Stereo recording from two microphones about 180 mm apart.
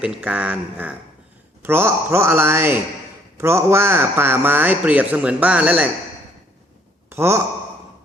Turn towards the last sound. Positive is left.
turn(degrees=-15)  # may be behind; listen again after turning